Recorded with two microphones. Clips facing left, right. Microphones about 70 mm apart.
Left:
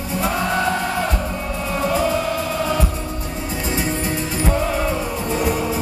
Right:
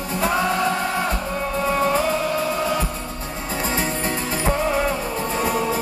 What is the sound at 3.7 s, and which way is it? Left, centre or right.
Music, right.